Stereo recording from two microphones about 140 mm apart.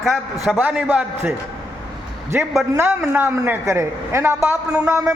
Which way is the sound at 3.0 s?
10° right (ahead or behind).